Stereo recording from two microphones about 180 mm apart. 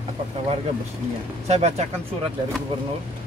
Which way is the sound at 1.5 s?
35° right (ahead or behind).